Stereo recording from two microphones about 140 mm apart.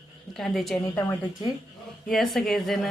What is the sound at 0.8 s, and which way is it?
Speech, 20° left (ahead or behind).